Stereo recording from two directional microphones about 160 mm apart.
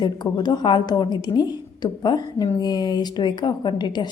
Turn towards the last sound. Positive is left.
turn(degrees=25)  # may be behind; listen again after turning